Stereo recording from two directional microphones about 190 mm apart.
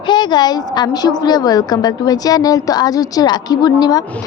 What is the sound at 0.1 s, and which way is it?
A woman's voice, 25° left (ahead or behind).